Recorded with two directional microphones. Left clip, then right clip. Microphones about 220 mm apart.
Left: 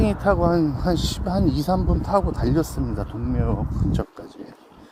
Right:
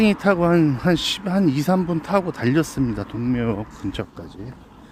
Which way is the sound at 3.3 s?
15° right (ahead or behind).